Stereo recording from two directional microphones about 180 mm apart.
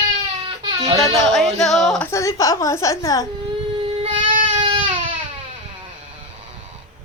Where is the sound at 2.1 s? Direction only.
15° left (ahead or behind).